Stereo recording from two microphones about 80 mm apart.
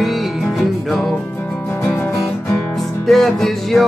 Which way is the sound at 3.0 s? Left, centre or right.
Centre.